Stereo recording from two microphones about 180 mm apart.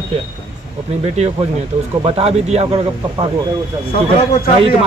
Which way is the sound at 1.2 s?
35° right (ahead or behind).